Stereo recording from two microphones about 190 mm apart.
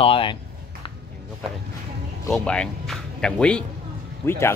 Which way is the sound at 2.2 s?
Centre (ahead or behind).